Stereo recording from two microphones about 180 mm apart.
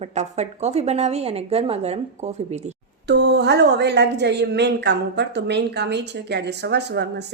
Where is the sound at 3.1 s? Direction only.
70° right (ahead or behind).